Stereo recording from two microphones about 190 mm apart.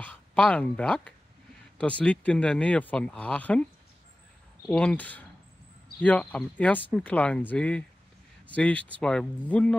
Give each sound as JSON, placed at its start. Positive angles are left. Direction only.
{"t": 0.0, "sound": "speech", "side_deg": 5}
{"t": 4.6, "sound": "speech", "side_deg": 5}